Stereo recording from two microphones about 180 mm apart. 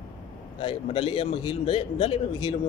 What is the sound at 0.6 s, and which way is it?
A man's voice, 30° left (ahead or behind).